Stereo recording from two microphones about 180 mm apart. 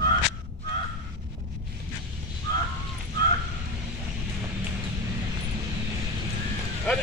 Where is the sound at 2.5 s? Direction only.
20° left (ahead or behind).